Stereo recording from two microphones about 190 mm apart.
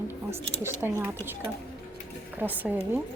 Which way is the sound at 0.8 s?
10° right (ahead or behind).